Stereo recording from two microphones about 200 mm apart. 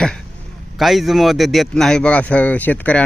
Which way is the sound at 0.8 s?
Centre (ahead or behind).